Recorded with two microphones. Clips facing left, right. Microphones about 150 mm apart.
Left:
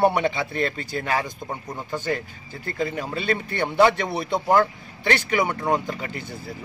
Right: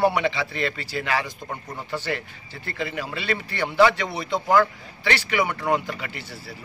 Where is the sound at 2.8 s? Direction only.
40° left (ahead or behind).